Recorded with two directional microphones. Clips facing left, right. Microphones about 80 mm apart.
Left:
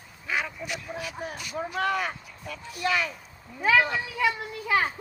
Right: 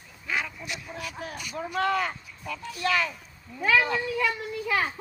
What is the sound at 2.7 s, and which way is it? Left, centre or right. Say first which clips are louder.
Speech: even; centre.